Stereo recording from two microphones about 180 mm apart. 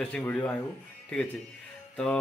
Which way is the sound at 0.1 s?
10° left (ahead or behind).